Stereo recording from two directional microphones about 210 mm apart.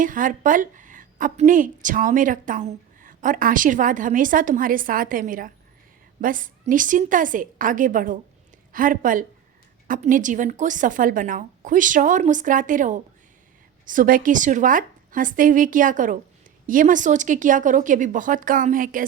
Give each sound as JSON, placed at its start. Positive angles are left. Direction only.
{"t": 0.0, "sound": "a woman's voice", "side_deg": -40}